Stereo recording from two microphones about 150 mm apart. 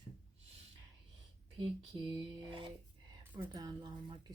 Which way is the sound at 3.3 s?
25° right (ahead or behind).